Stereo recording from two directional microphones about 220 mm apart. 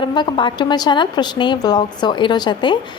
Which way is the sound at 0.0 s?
20° left (ahead or behind).